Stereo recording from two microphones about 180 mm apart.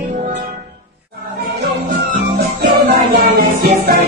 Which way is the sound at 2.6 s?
55° right (ahead or behind).